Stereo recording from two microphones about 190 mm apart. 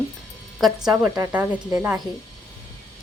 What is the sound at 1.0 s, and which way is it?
Speech, 10° right (ahead or behind).